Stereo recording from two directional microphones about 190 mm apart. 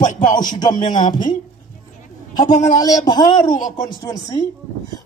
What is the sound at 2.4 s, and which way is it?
Speech, 40° left (ahead or behind).